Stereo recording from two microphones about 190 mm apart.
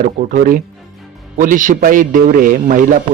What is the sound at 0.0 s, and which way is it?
A man's voice, 45° right (ahead or behind).